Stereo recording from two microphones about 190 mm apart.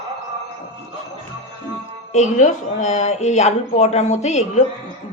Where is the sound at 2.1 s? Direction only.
40° left (ahead or behind).